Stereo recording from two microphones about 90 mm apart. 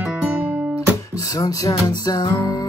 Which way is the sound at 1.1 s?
45° left (ahead or behind).